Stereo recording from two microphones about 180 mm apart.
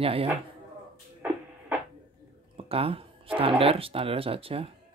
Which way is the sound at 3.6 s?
30° right (ahead or behind).